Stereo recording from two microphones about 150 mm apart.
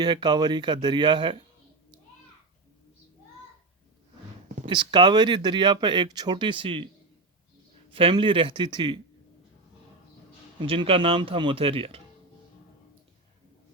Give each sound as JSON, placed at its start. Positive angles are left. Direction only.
{"t": 0.0, "sound": "speech", "side_deg": -30}
{"t": 4.6, "sound": "speech", "side_deg": -30}
{"t": 7.9, "sound": "speech", "side_deg": -35}
{"t": 10.6, "sound": "speech", "side_deg": -35}